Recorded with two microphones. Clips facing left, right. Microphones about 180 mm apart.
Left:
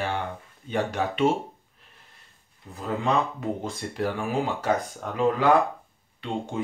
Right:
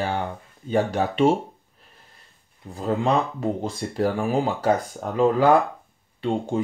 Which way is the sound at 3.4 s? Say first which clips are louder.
Right 4 dB; 35° right (ahead or behind).